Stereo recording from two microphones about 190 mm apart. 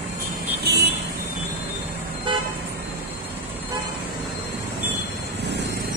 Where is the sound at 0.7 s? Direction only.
60° right (ahead or behind).